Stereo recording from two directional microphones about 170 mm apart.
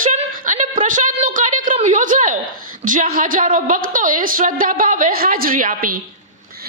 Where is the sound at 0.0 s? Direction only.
50° right (ahead or behind).